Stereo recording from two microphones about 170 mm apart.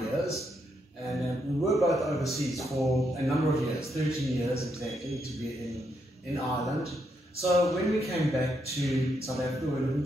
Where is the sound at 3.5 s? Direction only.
20° left (ahead or behind).